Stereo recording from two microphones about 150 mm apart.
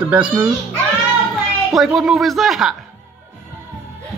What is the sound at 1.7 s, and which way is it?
Speech, centre (ahead or behind).